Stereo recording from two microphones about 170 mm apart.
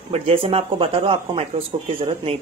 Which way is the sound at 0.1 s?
35° right (ahead or behind).